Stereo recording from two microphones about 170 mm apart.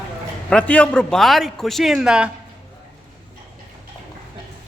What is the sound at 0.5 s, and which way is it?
A man's voice, 10° left (ahead or behind).